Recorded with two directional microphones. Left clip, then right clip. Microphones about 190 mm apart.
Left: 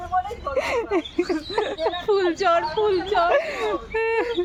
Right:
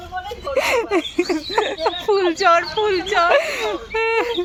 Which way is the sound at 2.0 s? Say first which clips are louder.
Right 5 dB; 30° right (ahead or behind).